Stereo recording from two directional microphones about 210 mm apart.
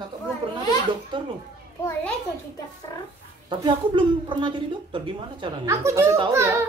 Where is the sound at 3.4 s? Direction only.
20° right (ahead or behind).